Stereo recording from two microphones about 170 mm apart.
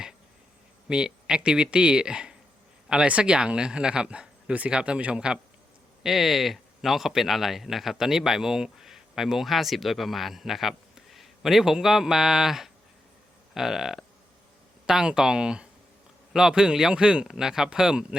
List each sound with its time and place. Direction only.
0.9 s speech: 5° right (ahead or behind)